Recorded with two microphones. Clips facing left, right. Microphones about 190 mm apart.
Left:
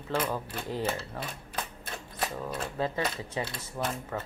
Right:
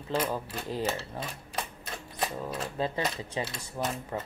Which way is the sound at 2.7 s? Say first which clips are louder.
Even; 20° right (ahead or behind).